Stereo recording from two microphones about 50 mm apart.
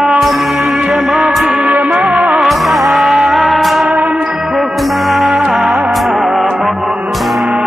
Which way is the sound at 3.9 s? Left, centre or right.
Centre.